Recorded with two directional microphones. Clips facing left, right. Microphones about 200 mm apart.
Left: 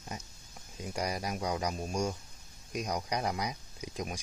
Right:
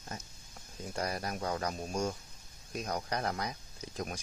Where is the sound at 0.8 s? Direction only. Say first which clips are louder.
Left 1 dB; 10° left (ahead or behind).